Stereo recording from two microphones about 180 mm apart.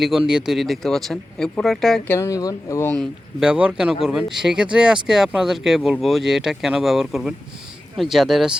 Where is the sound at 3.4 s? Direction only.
5° right (ahead or behind).